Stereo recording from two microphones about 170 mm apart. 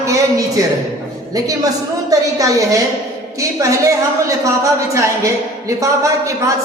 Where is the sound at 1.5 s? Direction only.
20° right (ahead or behind).